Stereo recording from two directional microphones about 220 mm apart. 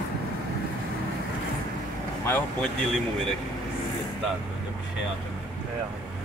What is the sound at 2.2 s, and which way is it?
Speech, 10° left (ahead or behind).